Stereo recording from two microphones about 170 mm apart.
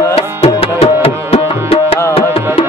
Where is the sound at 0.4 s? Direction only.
35° left (ahead or behind).